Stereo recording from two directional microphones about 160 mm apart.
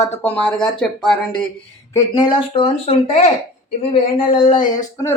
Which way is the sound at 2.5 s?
40° left (ahead or behind).